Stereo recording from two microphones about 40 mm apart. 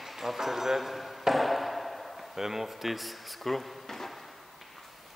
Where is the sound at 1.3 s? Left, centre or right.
Centre.